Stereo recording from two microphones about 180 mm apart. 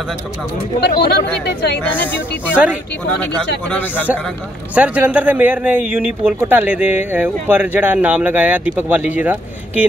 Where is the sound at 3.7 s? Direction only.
10° left (ahead or behind).